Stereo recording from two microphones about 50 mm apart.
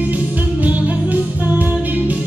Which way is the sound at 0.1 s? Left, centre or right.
Right.